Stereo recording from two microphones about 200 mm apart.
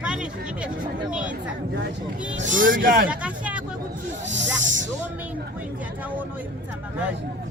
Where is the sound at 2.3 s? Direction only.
40° right (ahead or behind).